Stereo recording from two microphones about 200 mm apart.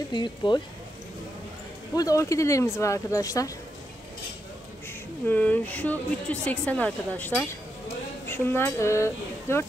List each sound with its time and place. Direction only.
0.1 s speech: 20° left (ahead or behind)
2.0 s a woman's voice: 15° left (ahead or behind)
4.8 s a woman's voice: 10° left (ahead or behind)